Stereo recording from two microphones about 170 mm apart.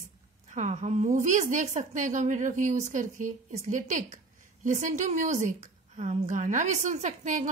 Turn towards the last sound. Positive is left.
turn(degrees=-45)  # may be behind; listen again after turning